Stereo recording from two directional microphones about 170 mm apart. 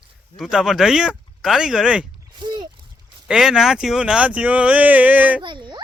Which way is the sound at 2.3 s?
30° right (ahead or behind).